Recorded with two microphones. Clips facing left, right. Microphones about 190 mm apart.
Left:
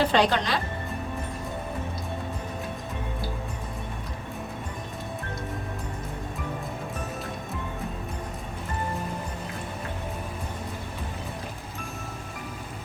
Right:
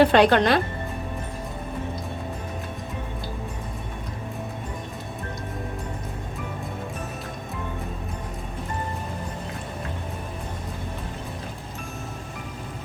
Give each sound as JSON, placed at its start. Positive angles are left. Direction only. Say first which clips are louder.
{"t": 0.0, "sound": "speech", "louder": "right 6 dB", "side_deg": -60}